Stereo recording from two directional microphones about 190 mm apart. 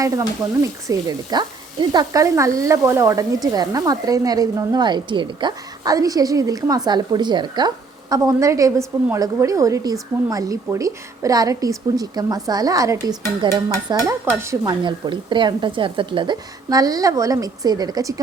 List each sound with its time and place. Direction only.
0.0 s a woman's voice: 15° right (ahead or behind)